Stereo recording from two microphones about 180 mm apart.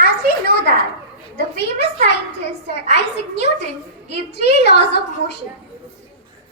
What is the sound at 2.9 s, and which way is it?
A child's voice, 70° left (ahead or behind).